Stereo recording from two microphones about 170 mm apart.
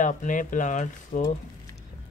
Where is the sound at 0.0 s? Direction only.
50° left (ahead or behind).